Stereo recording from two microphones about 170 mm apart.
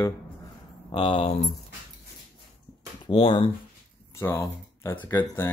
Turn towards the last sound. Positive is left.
turn(degrees=15)  # may be behind; listen again after turning